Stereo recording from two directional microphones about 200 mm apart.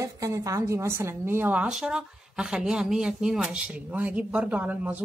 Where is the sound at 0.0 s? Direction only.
15° right (ahead or behind).